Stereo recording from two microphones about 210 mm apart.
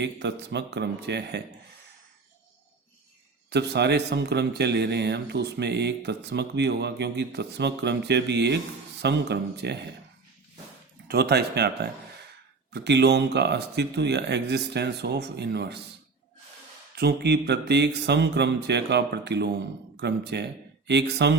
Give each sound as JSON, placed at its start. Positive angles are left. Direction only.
{"t": 0.0, "sound": "speech", "side_deg": -55}
{"t": 3.5, "sound": "a man's voice", "side_deg": -55}
{"t": 11.1, "sound": "a man's voice", "side_deg": -50}
{"t": 16.9, "sound": "a man's voice", "side_deg": -50}